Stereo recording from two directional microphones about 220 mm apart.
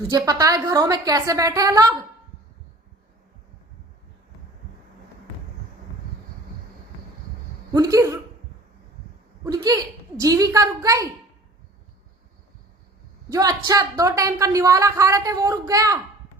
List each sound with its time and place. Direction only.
0.1 s speech: 15° right (ahead or behind)
7.7 s speech: 15° right (ahead or behind)
9.4 s speech: 15° right (ahead or behind)
13.3 s speech: 15° right (ahead or behind)